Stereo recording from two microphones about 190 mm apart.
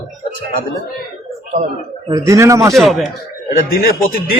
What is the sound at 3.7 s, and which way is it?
Speech, 50° left (ahead or behind).